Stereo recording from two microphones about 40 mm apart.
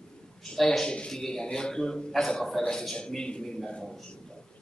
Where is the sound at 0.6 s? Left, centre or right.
Centre.